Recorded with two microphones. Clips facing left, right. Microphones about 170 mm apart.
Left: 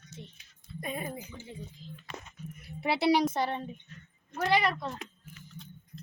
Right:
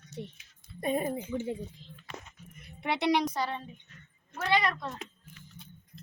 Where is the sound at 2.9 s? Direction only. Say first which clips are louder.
Left 2 dB; 10° left (ahead or behind).